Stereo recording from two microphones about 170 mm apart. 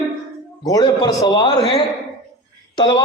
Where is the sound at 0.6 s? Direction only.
20° left (ahead or behind).